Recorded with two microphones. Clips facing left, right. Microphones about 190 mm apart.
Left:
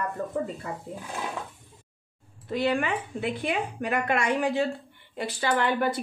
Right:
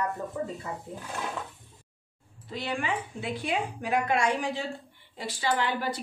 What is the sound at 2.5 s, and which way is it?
A woman's voice, 55° left (ahead or behind).